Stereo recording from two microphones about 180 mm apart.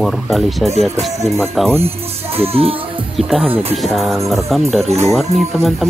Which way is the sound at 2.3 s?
35° right (ahead or behind).